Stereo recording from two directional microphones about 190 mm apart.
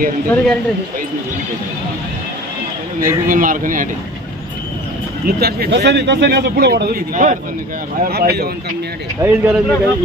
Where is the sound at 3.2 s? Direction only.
45° right (ahead or behind).